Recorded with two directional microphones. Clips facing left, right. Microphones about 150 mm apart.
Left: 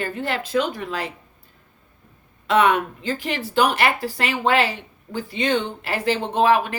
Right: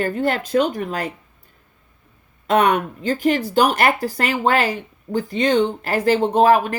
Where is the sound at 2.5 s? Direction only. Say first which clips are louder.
Right 1 dB; 45° right (ahead or behind).